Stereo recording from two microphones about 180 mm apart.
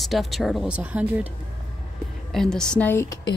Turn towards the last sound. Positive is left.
turn(degrees=10)  # may be behind; listen again after turning